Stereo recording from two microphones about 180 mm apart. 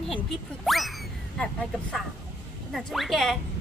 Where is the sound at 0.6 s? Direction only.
Centre (ahead or behind).